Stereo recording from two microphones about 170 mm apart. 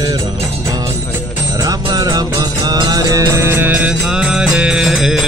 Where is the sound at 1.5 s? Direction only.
20° right (ahead or behind); by 5.2 s centre (ahead or behind).